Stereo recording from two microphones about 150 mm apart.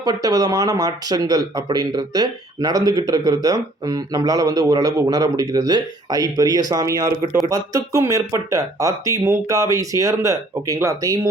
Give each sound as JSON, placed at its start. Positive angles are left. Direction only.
{"t": 0.0, "sound": "speech", "side_deg": -25}